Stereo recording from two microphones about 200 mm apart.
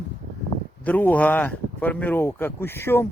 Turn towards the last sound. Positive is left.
turn(degrees=10)  # may be behind; listen again after turning